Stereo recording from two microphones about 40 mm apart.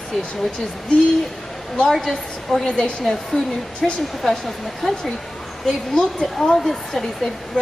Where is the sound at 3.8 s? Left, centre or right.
Centre.